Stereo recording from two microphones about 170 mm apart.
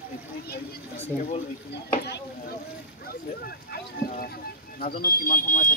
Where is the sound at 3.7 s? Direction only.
60° left (ahead or behind).